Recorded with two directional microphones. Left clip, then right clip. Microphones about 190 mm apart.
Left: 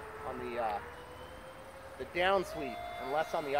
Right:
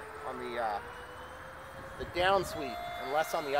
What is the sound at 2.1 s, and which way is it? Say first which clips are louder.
Speech: right 2 dB; 35° right (ahead or behind).